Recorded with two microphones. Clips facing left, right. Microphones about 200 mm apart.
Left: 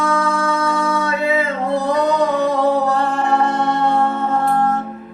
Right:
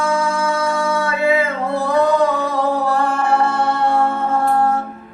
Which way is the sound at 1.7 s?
20° left (ahead or behind).